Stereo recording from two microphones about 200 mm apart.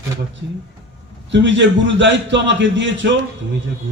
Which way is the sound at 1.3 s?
65° right (ahead or behind).